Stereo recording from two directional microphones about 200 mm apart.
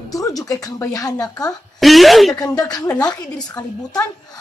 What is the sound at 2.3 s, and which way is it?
Speech, 20° left (ahead or behind).